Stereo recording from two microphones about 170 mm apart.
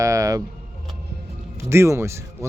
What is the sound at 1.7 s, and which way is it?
Speech, 15° right (ahead or behind).